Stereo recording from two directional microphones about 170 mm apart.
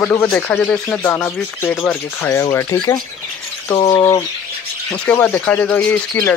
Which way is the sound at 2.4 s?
20° left (ahead or behind).